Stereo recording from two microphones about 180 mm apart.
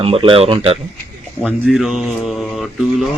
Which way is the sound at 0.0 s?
30° right (ahead or behind).